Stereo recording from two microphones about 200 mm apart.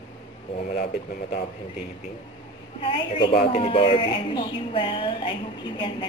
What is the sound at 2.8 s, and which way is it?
A woman's voice, 25° left (ahead or behind).